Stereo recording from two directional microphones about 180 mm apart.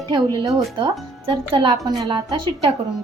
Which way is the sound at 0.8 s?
30° right (ahead or behind).